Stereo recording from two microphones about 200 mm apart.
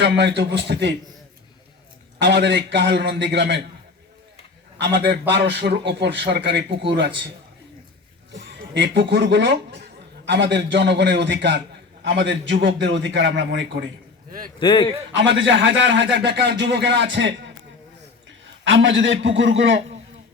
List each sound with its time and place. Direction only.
0.0 s a man's voice: 60° right (ahead or behind)
2.1 s a man's voice: 60° right (ahead or behind)
4.8 s a man's voice: 60° right (ahead or behind)
8.7 s a man's voice: 60° right (ahead or behind)
14.6 s a man's voice: 20° left (ahead or behind)
15.1 s a man's voice: 65° right (ahead or behind)
18.6 s a man's voice: 65° right (ahead or behind)